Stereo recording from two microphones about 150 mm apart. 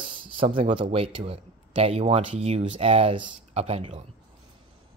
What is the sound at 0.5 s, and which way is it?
Speech, 35° right (ahead or behind).